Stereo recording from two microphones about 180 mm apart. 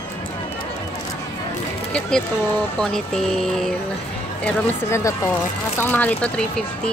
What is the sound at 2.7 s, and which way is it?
Speech, 5° left (ahead or behind).